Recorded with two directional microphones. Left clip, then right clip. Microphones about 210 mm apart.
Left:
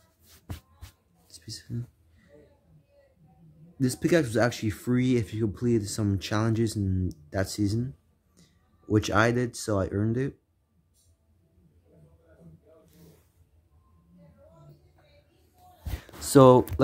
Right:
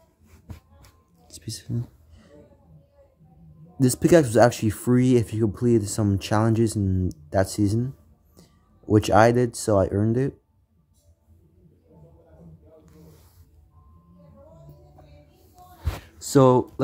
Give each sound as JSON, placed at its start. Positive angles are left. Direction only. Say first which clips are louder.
{"t": 1.2, "sound": "a sound", "louder": "right 4 dB", "side_deg": -15}
{"t": 3.8, "sound": "speech", "louder": "right 7 dB", "side_deg": -15}
{"t": 16.2, "sound": "speech", "louder": "left 1 dB", "side_deg": 10}